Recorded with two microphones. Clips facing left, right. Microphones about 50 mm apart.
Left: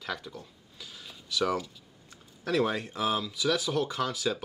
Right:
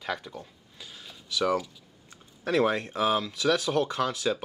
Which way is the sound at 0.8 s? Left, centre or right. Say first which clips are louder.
Right 1 dB; centre.